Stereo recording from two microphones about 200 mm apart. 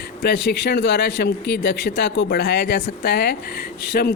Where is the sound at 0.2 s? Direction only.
55° left (ahead or behind).